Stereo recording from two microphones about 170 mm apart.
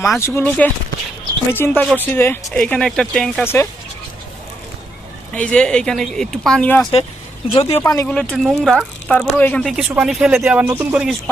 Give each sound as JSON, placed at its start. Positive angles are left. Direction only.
{"t": 0.2, "sound": "speech", "side_deg": 15}
{"t": 3.4, "sound": "speech", "side_deg": 15}
{"t": 5.3, "sound": "speech", "side_deg": 5}
{"t": 7.5, "sound": "speech", "side_deg": 35}
{"t": 7.8, "sound": "speech", "side_deg": 15}
{"t": 8.0, "sound": "speech", "side_deg": 5}
{"t": 9.7, "sound": "speech", "side_deg": -5}